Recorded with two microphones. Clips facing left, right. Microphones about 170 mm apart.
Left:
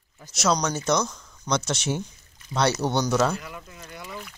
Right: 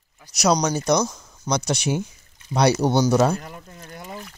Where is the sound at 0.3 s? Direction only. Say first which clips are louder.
Right 4 dB; 15° right (ahead or behind).